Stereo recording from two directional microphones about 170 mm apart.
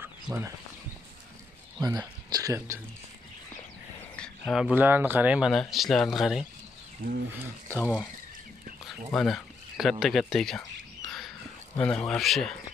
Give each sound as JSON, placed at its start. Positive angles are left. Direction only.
{"t": 0.0, "sound": "a sound", "side_deg": -15}
{"t": 1.8, "sound": "speech", "side_deg": -20}
{"t": 4.2, "sound": "speech", "side_deg": 0}
{"t": 7.0, "sound": "speech", "side_deg": -55}
{"t": 7.8, "sound": "speech", "side_deg": -5}
{"t": 9.1, "sound": "speech", "side_deg": 0}
{"t": 11.1, "sound": "dog", "side_deg": 0}
{"t": 11.8, "sound": "speech", "side_deg": 5}